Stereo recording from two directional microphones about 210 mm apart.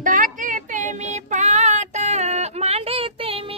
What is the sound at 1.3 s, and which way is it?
Child singing, 35° right (ahead or behind).